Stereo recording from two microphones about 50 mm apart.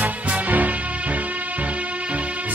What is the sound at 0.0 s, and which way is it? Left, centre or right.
Music, right.